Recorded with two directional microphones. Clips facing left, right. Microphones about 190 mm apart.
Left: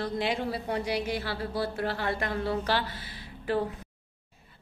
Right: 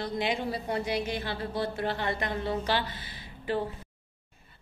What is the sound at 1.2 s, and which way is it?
A woman's voice, 20° right (ahead or behind).